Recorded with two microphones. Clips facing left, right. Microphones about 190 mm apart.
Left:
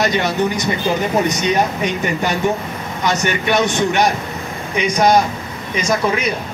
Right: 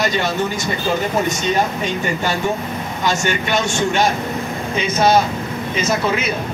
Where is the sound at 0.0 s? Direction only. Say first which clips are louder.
Left 2 dB; 20° left (ahead or behind).